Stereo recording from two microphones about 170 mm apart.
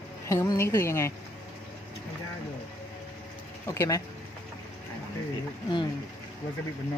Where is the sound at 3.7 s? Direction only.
20° left (ahead or behind).